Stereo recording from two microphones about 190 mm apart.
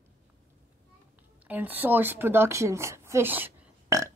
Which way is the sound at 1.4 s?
10° right (ahead or behind).